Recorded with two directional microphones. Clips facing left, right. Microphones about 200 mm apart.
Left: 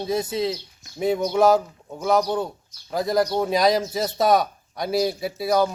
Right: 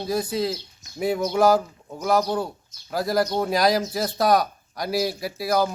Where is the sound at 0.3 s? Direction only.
Centre (ahead or behind).